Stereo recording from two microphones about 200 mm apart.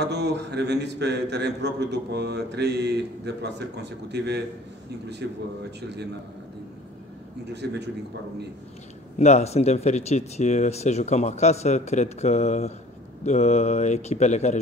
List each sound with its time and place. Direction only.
0.0 s a man's voice: 55° right (ahead or behind)
7.6 s a man's voice: 60° right (ahead or behind)
9.2 s speech: 35° left (ahead or behind)